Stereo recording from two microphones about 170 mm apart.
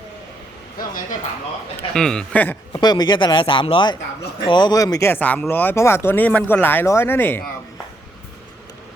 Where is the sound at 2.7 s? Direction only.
25° left (ahead or behind).